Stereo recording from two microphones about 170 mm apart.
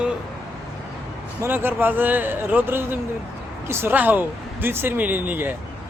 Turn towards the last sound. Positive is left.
turn(degrees=-10)  # may be behind; listen again after turning